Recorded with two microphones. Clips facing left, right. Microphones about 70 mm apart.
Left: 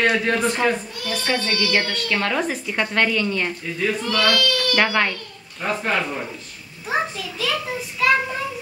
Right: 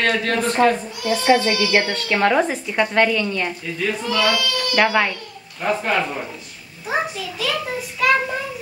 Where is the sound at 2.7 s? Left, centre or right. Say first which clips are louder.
Right 2 dB; centre.